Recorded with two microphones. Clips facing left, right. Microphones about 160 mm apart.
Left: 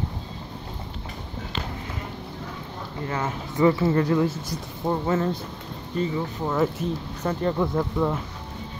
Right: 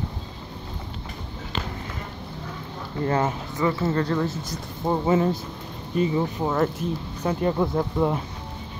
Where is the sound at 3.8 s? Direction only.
10° left (ahead or behind).